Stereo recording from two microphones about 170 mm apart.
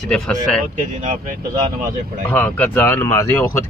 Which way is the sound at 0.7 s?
50° right (ahead or behind).